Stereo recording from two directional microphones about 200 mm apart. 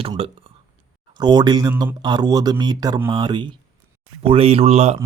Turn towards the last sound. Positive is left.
turn(degrees=-30)  # may be behind; listen again after turning